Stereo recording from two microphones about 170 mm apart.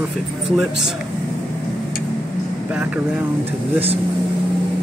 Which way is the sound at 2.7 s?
10° right (ahead or behind).